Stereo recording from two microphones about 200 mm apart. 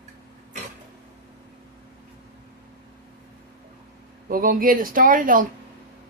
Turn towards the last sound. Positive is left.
turn(degrees=-45)  # may be behind; listen again after turning